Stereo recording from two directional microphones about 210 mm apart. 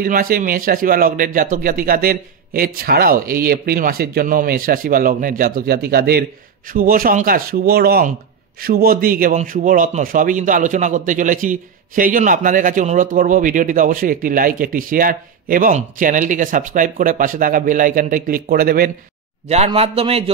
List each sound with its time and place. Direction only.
0.0 s a man's voice: 40° right (ahead or behind)
19.4 s a man's voice: 30° right (ahead or behind)